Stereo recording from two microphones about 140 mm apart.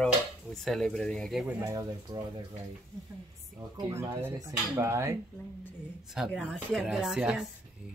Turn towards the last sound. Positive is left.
turn(degrees=-5)  # may be behind; listen again after turning